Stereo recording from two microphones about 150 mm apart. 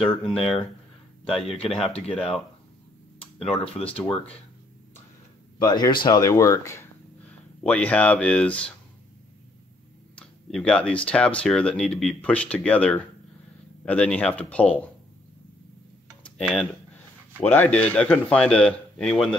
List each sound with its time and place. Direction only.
0.2 s speech: centre (ahead or behind)
3.4 s speech: 5° left (ahead or behind)
5.6 s speech: 30° left (ahead or behind)
7.6 s speech: 10° left (ahead or behind)
10.1 s speech: 5° left (ahead or behind)
16.2 s tick-tock: 5° left (ahead or behind)
17.4 s speech: 10° left (ahead or behind)